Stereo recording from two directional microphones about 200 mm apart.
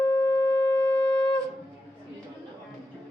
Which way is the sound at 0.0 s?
15° left (ahead or behind).